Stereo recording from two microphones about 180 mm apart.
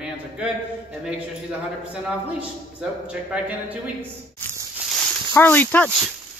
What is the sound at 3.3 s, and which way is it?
Speech, 5° right (ahead or behind).